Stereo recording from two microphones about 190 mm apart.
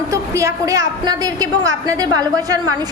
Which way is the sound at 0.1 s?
15° right (ahead or behind).